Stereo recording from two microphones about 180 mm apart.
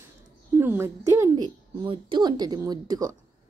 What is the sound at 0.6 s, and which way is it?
Speech, 15° right (ahead or behind).